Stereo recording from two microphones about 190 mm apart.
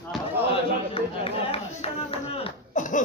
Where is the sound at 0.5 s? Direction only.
30° left (ahead or behind).